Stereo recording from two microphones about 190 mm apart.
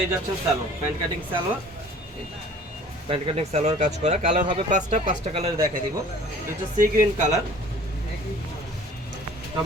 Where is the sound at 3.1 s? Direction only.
30° right (ahead or behind).